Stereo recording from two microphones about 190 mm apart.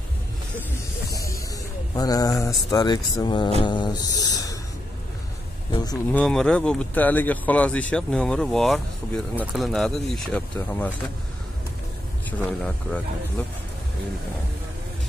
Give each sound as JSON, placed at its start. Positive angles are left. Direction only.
{"t": 1.1, "sound": "music", "side_deg": 15}
{"t": 2.0, "sound": "speech", "side_deg": 20}
{"t": 5.7, "sound": "speech", "side_deg": 20}
{"t": 6.1, "sound": "speech", "side_deg": 5}
{"t": 12.3, "sound": "speech", "side_deg": 5}